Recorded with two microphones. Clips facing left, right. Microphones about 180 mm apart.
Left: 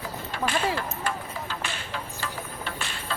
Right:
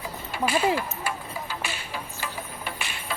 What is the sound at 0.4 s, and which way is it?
Speech, 10° right (ahead or behind).